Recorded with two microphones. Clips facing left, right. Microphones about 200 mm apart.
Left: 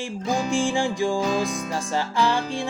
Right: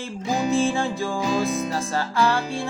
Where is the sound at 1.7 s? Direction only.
15° left (ahead or behind).